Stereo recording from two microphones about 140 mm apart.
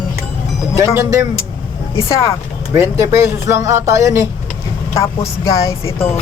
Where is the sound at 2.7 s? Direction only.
20° right (ahead or behind).